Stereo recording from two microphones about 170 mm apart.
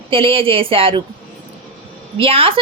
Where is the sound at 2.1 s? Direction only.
30° right (ahead or behind).